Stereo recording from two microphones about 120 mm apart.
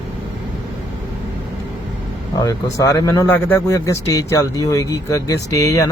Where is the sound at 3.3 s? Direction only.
20° left (ahead or behind).